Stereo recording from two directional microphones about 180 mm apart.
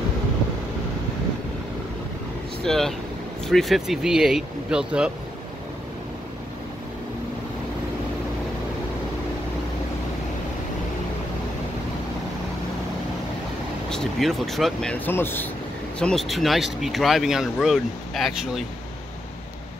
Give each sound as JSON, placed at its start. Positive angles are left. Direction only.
{"t": 2.6, "sound": "speech", "side_deg": 0}
{"t": 13.8, "sound": "speech", "side_deg": 0}